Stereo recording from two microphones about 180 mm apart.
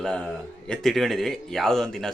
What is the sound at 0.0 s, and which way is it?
A man's voice, 5° left (ahead or behind).